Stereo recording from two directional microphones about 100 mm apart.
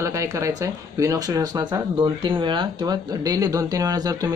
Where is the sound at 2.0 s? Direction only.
55° right (ahead or behind); by 4.3 s 40° right (ahead or behind).